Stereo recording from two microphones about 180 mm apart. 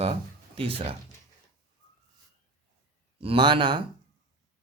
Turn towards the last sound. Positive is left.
turn(degrees=-25)  # may be behind; listen again after turning